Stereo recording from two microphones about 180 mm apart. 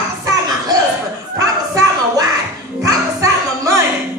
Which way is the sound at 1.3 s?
20° right (ahead or behind).